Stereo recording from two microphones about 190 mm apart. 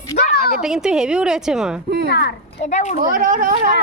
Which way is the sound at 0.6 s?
5° right (ahead or behind).